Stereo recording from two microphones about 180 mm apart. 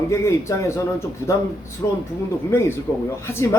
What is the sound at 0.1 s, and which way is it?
Speech, 15° left (ahead or behind).